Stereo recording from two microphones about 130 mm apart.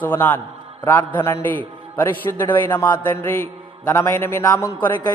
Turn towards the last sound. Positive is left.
turn(degrees=20)  # may be behind; listen again after turning